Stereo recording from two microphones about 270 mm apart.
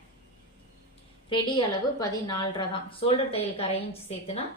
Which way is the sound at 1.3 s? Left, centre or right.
Centre.